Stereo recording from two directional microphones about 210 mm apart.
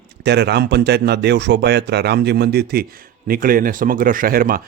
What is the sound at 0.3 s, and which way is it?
Speech, 50° right (ahead or behind).